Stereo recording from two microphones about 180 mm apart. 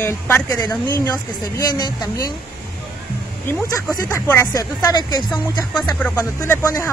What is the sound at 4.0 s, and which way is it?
Speech, 15° left (ahead or behind).